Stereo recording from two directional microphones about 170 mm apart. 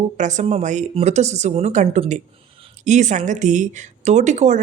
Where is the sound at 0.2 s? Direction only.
45° right (ahead or behind).